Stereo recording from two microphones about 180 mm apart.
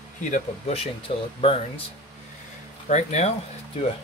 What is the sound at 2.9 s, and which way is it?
Speech, 40° left (ahead or behind).